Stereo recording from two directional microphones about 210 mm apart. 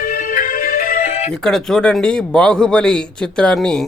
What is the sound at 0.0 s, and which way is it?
Music, 40° left (ahead or behind).